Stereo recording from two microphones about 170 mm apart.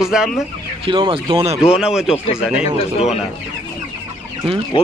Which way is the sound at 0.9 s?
30° right (ahead or behind).